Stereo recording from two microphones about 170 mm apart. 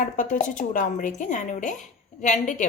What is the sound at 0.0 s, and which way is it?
A woman's voice, 50° left (ahead or behind).